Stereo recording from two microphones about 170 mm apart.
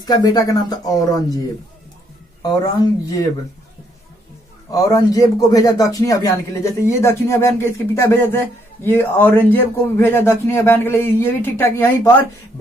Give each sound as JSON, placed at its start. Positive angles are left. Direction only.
{"t": 0.0, "sound": "speech", "side_deg": 25}
{"t": 2.4, "sound": "speech", "side_deg": 20}
{"t": 4.6, "sound": "speech", "side_deg": 20}